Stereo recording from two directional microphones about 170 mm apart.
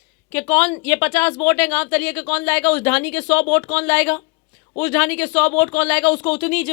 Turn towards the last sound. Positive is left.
turn(degrees=10)  # may be behind; listen again after turning